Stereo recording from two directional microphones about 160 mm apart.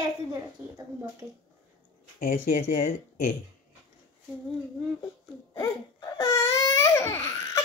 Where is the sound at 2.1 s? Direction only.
65° left (ahead or behind).